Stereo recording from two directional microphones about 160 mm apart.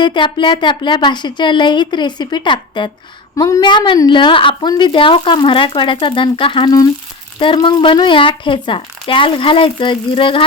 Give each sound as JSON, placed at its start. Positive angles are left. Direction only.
{"t": 0.0, "sound": "a woman's voice", "side_deg": 30}